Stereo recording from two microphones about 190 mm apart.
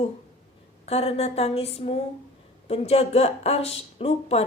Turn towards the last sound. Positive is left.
turn(degrees=30)  # may be behind; listen again after turning